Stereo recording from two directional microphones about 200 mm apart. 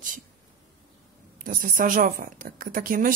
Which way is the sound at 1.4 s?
40° right (ahead or behind).